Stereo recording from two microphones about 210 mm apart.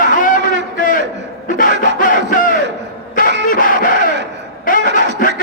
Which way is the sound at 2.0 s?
40° left (ahead or behind).